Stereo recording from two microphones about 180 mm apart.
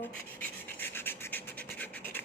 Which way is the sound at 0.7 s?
10° left (ahead or behind).